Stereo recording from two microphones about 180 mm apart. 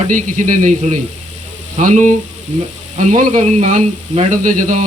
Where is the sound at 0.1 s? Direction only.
45° right (ahead or behind).